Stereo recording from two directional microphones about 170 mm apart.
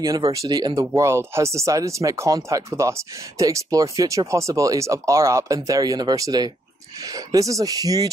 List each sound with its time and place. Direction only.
0.0 s speech: 20° right (ahead or behind)